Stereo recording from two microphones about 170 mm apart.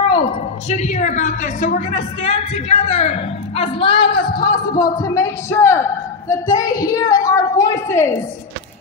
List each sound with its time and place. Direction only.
0.1 s a woman's voice: 40° left (ahead or behind); by 8.2 s 15° left (ahead or behind)